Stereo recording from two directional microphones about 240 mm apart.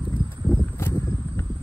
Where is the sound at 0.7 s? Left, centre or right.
Centre.